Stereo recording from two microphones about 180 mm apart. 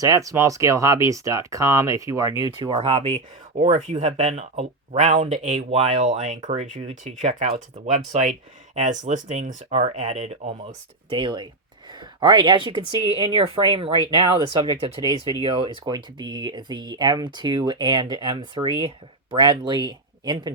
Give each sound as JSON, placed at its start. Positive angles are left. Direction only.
{"t": 0.0, "sound": "speech", "side_deg": -20}
{"t": 2.7, "sound": "speech", "side_deg": -35}
{"t": 11.1, "sound": "speech", "side_deg": -25}